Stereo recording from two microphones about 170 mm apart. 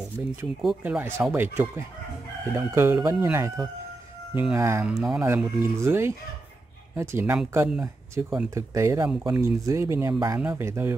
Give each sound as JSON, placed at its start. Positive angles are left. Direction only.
{"t": 0.2, "sound": "speech", "side_deg": -15}
{"t": 4.9, "sound": "speech", "side_deg": 0}
{"t": 5.6, "sound": "speech", "side_deg": -15}